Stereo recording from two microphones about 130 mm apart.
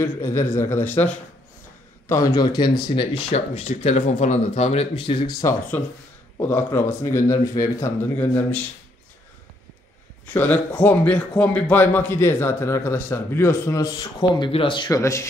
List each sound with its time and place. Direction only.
0.0 s speech: 20° left (ahead or behind)
2.0 s speech: 25° left (ahead or behind)
3.3 s speech: 55° left (ahead or behind)
4.9 s speech: 35° left (ahead or behind)
6.4 s speech: 15° left (ahead or behind)
10.3 s speech: 10° left (ahead or behind); by 14.5 s 30° left (ahead or behind)
14.5 s speech: 40° left (ahead or behind); by 15.2 s 25° left (ahead or behind)